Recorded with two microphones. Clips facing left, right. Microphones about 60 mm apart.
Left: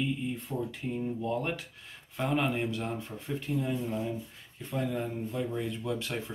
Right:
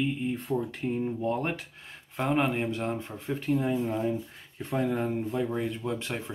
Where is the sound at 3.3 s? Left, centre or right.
Right.